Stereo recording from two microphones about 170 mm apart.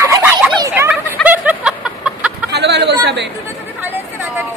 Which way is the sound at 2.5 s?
80° right.